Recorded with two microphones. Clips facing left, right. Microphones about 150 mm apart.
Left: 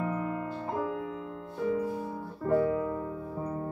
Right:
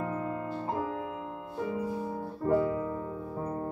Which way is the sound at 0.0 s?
30° right (ahead or behind).